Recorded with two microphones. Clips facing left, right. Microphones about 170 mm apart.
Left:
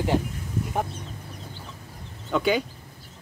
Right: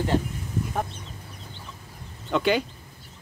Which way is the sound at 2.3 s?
Centre (ahead or behind).